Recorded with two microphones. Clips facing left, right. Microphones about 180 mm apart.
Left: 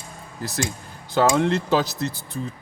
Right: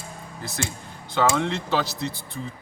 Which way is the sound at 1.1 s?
40° left (ahead or behind).